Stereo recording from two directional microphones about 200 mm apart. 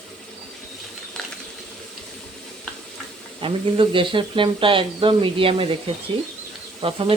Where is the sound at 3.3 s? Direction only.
25° right (ahead or behind).